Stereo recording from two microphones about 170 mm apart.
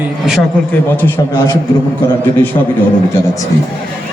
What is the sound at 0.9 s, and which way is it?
Speech, 10° left (ahead or behind).